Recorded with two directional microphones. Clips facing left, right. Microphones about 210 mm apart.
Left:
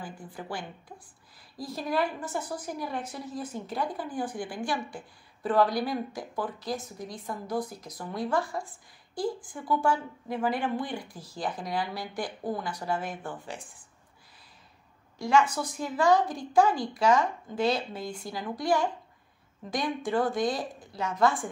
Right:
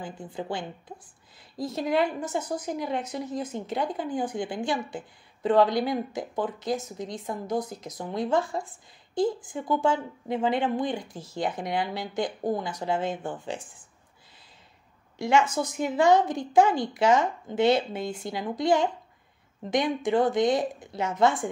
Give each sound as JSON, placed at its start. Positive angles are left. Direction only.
{"t": 0.0, "sound": "a woman's voice", "side_deg": -25}
{"t": 15.1, "sound": "a woman's voice", "side_deg": -25}